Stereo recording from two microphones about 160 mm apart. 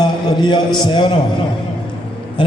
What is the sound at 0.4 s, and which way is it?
Speech, 30° left (ahead or behind).